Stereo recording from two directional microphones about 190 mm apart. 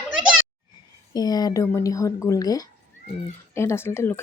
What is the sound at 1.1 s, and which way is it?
Speech, 20° left (ahead or behind).